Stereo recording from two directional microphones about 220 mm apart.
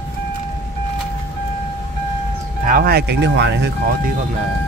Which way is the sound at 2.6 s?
40° right (ahead or behind).